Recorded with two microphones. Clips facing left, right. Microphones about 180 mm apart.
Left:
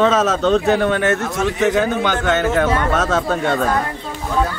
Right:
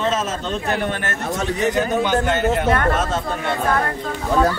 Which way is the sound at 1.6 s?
90° left.